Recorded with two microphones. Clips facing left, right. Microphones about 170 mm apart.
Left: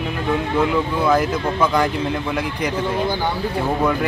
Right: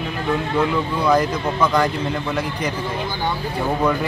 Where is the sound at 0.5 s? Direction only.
5° left (ahead or behind).